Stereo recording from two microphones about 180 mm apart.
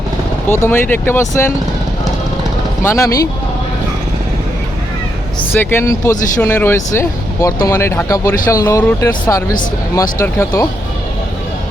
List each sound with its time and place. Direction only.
0.4 s speech: 10° left (ahead or behind)
2.8 s speech: 15° left (ahead or behind)
5.5 s speech: 15° left (ahead or behind)